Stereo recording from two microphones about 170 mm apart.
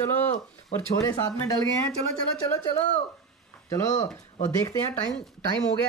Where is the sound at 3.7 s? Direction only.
20° left (ahead or behind).